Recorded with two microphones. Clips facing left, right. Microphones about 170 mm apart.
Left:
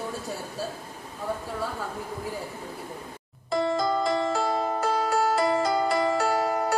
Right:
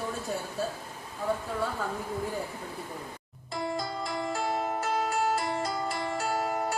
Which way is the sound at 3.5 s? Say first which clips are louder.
Left 8 dB; 90° left.